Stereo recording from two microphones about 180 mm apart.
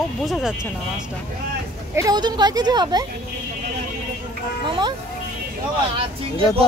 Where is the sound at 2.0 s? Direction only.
20° right (ahead or behind).